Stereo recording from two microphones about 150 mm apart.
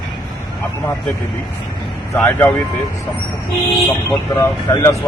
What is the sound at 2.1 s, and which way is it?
Speech, 15° left (ahead or behind).